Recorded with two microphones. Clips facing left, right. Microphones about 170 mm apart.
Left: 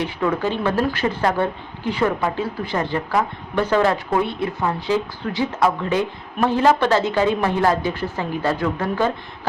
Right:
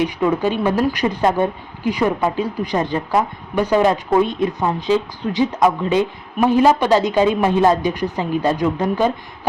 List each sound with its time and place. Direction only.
0.0 s speech: 15° right (ahead or behind)